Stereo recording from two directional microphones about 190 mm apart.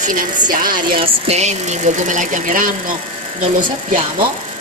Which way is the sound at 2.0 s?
45° right (ahead or behind).